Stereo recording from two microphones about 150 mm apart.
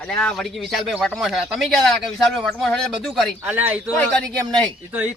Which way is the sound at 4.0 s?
5° left (ahead or behind).